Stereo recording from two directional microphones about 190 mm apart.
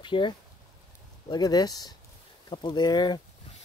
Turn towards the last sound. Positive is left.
turn(degrees=20)  # may be behind; listen again after turning